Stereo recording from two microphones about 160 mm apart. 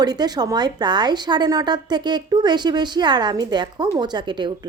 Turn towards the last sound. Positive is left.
turn(degrees=-30)  # may be behind; listen again after turning